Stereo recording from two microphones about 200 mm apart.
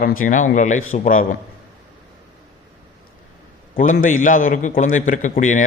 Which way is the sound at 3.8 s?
40° left (ahead or behind).